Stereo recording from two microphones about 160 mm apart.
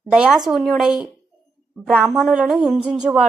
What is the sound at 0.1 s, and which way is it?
Speech, 5° right (ahead or behind).